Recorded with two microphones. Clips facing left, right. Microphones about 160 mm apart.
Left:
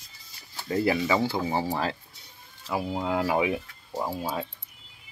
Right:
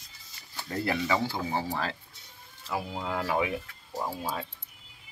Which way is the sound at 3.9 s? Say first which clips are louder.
Left 3 dB; 15° left (ahead or behind).